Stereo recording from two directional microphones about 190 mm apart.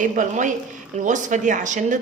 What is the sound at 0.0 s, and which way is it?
Speech, 40° right (ahead or behind).